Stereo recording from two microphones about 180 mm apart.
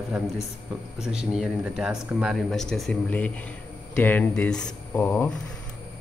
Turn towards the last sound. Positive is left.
turn(degrees=10)  # may be behind; listen again after turning